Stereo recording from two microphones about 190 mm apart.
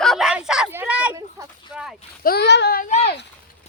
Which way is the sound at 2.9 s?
35° left (ahead or behind).